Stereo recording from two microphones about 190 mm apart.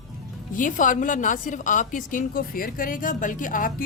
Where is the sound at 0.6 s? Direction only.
45° left (ahead or behind).